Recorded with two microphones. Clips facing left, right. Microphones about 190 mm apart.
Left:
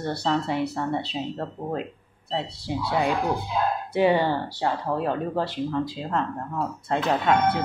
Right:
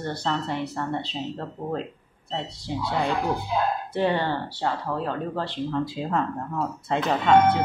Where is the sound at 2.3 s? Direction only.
5° left (ahead or behind).